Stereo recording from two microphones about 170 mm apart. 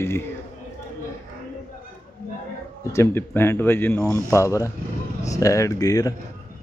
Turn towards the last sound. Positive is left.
turn(degrees=20)  # may be behind; listen again after turning